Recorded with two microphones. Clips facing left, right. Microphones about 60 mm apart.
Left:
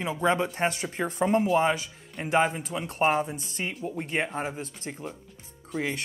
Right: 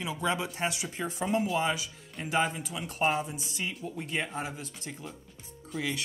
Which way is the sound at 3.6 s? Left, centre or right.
Left.